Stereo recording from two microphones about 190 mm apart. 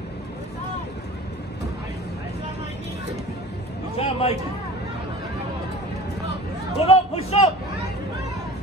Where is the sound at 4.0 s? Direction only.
30° left (ahead or behind).